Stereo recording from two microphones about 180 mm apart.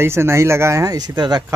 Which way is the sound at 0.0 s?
15° right (ahead or behind).